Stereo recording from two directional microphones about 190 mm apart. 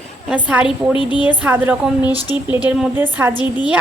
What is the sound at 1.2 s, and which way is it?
A woman's voice, 10° right (ahead or behind).